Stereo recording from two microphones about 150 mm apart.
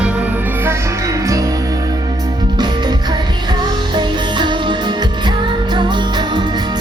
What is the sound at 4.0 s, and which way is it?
Music, 30° right (ahead or behind).